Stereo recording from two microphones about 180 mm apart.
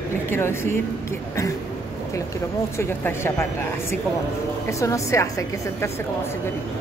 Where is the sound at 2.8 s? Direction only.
15° left (ahead or behind).